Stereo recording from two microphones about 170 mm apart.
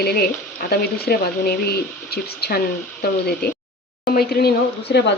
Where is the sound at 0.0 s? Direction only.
65° left (ahead or behind).